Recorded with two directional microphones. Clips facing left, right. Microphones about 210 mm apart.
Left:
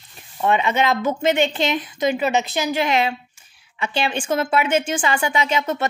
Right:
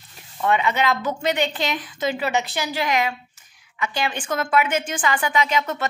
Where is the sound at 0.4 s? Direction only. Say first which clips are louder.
Left 2 dB; 20° left (ahead or behind).